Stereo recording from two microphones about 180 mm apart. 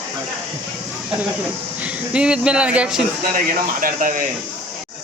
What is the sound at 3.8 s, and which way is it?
Speech, 50° right (ahead or behind).